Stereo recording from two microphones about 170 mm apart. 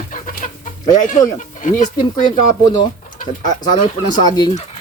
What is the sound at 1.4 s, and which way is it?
Speech, 45° left (ahead or behind).